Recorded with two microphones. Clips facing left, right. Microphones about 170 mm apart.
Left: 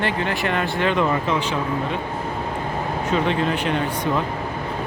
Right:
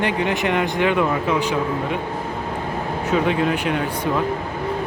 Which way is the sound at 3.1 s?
5° right (ahead or behind).